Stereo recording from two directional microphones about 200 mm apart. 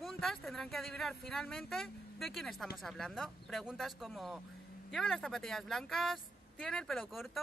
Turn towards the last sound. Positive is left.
turn(degrees=0)  # may be behind; listen again after turning